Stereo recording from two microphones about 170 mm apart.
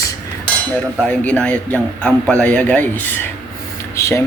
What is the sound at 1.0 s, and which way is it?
A man's voice, 5° left (ahead or behind).